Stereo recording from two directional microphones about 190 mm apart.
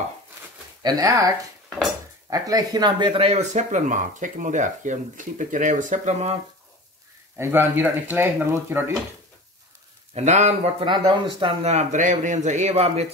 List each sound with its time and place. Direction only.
0.8 s speech: 20° right (ahead or behind); by 6.3 s 35° right (ahead or behind)
7.3 s speech: 10° right (ahead or behind)
10.1 s speech: 35° right (ahead or behind)
10.9 s speech: 25° right (ahead or behind)